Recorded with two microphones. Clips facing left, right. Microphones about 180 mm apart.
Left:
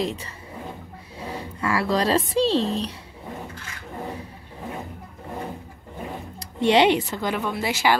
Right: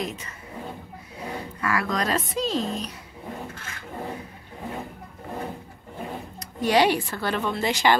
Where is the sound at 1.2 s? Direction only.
30° left (ahead or behind).